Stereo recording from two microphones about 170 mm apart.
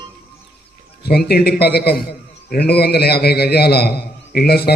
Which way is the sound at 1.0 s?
65° left (ahead or behind).